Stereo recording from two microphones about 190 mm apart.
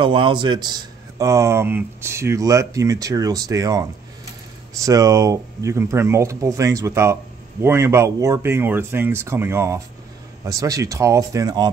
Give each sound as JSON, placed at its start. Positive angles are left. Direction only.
{"t": 0.0, "sound": "speech", "side_deg": -25}
{"t": 4.8, "sound": "speech", "side_deg": -15}